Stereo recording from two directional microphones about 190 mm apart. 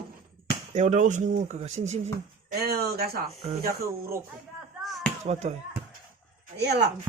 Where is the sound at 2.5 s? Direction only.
55° right (ahead or behind).